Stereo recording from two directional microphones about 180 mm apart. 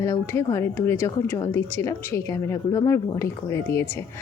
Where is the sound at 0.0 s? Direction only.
15° left (ahead or behind).